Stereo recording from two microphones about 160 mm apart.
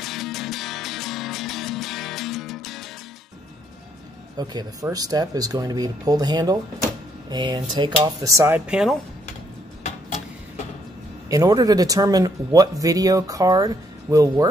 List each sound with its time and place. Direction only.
0.0 s music: centre (ahead or behind)
4.4 s speech: 25° right (ahead or behind); by 8.9 s 5° right (ahead or behind)
11.2 s speech: 20° right (ahead or behind)